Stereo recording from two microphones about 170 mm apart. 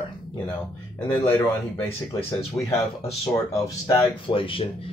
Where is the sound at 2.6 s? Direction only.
15° left (ahead or behind).